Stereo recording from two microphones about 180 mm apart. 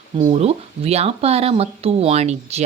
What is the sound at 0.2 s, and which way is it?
Speech, 30° right (ahead or behind).